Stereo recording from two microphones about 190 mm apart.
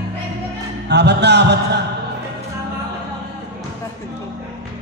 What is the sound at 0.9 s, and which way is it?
Chant, 60° right (ahead or behind).